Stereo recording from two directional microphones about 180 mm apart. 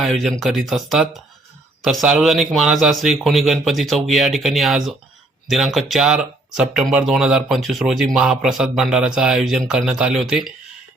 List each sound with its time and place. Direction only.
0.0 s speech: centre (ahead or behind)